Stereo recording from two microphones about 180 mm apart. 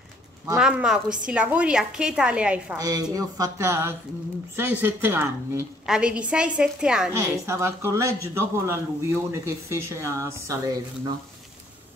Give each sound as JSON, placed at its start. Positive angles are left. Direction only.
{"t": 0.6, "sound": "a woman's voice", "side_deg": -5}
{"t": 2.8, "sound": "a woman's voice", "side_deg": -20}
{"t": 7.2, "sound": "speech", "side_deg": -15}